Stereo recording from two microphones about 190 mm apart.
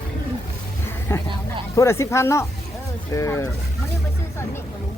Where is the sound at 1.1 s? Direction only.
10° left (ahead or behind).